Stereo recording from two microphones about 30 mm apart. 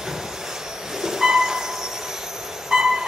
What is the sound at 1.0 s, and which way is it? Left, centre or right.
Vehicle, centre.